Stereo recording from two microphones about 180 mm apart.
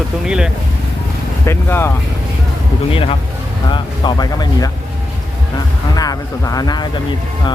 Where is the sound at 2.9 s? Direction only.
30° left (ahead or behind).